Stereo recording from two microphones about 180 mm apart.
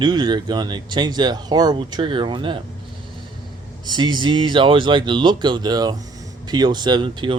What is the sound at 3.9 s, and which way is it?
Speech, 25° right (ahead or behind).